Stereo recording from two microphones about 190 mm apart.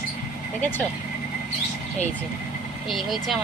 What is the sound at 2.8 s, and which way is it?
Speech, centre (ahead or behind).